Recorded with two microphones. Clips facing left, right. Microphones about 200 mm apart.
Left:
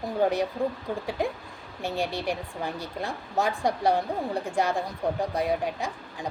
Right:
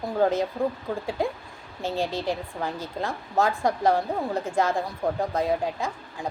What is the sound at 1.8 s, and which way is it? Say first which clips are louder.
A woman's voice: right 2 dB; 15° left (ahead or behind).